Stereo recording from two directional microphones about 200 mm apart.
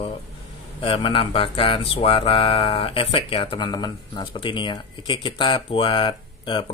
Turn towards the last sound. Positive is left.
turn(degrees=25)  # may be behind; listen again after turning